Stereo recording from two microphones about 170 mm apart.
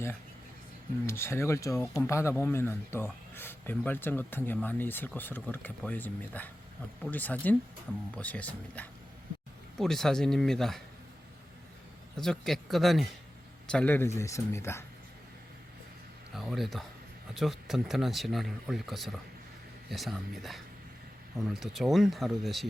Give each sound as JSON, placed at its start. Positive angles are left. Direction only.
{"t": 1.0, "sound": "speech", "side_deg": 15}
{"t": 12.1, "sound": "speech", "side_deg": 5}
{"t": 16.3, "sound": "speech", "side_deg": 0}